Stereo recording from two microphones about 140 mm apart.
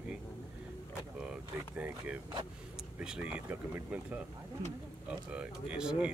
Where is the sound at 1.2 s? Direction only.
10° right (ahead or behind).